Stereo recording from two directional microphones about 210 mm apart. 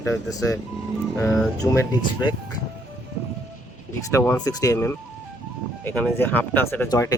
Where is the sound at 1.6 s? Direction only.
15° left (ahead or behind).